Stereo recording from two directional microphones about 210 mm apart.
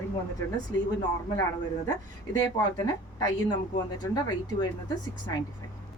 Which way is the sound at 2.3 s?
20° left (ahead or behind).